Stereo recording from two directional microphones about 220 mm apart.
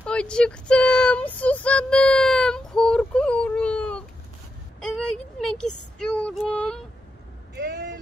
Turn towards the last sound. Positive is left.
turn(degrees=-50)  # may be behind; listen again after turning